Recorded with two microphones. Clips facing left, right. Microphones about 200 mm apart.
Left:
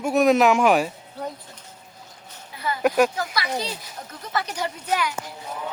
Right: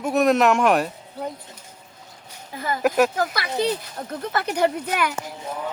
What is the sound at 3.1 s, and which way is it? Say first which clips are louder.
A woman's voice: right 3 dB; 50° right (ahead or behind).